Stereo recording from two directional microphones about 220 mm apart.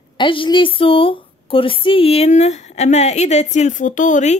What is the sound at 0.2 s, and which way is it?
A woman's voice, 20° left (ahead or behind).